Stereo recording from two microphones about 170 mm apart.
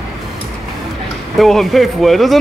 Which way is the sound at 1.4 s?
Centre (ahead or behind).